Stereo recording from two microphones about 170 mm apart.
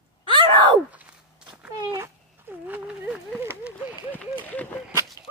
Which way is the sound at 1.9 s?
15° right (ahead or behind).